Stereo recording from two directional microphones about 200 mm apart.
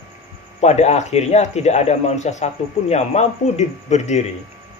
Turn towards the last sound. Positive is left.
turn(degrees=35)  # may be behind; listen again after turning